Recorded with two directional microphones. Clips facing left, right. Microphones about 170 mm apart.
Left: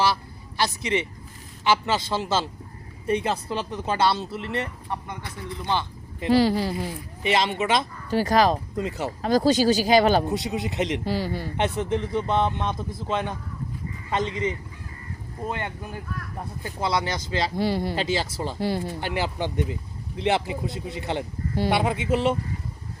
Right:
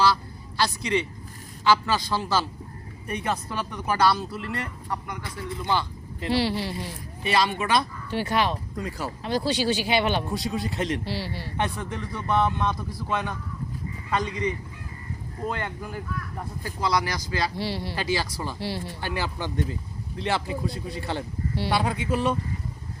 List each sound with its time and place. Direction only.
0.0 s a woman's voice: 20° left (ahead or behind)
6.3 s speech: 45° left (ahead or behind)
7.2 s speech: 20° left (ahead or behind)
8.1 s speech: 40° left (ahead or behind)
8.7 s speech: 20° left (ahead or behind)
9.2 s speech: 40° left (ahead or behind)
10.2 s speech: 20° left (ahead or behind)
11.0 s speech: 45° left (ahead or behind)
11.5 s speech: 20° left (ahead or behind)
17.6 s speech: 50° left (ahead or behind)
17.9 s speech: 25° left (ahead or behind)
18.6 s speech: 50° left (ahead or behind)
18.9 s speech: 20° left (ahead or behind)